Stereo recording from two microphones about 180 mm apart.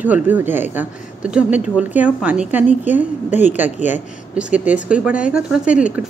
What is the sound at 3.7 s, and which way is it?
Speech, 40° left (ahead or behind).